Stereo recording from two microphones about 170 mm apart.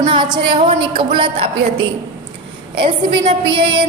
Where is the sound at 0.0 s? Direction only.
30° right (ahead or behind).